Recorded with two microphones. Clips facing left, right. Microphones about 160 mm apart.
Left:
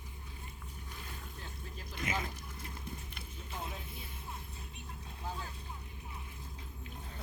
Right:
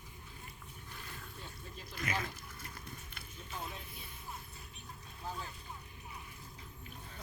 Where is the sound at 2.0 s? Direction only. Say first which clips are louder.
Left 1 dB; 20° left (ahead or behind).